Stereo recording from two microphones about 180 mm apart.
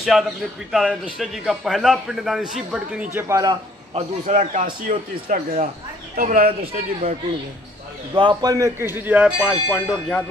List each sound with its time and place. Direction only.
0.0 s a man's voice: centre (ahead or behind)
3.9 s a man's voice: 40° right (ahead or behind)
8.1 s speech: 25° right (ahead or behind); by 10.2 s centre (ahead or behind)